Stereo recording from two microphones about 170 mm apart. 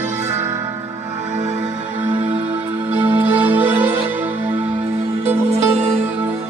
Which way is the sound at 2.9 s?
10° right (ahead or behind).